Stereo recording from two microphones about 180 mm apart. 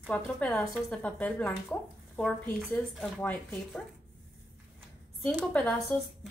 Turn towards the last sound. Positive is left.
turn(degrees=5)  # may be behind; listen again after turning